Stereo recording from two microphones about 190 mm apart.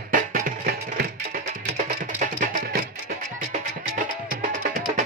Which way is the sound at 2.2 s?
40° right (ahead or behind).